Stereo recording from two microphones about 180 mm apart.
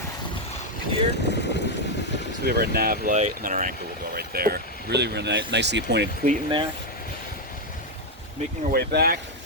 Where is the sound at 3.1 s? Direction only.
45° right (ahead or behind).